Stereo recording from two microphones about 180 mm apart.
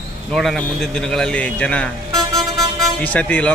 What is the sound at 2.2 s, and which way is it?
Vehicle, 20° right (ahead or behind).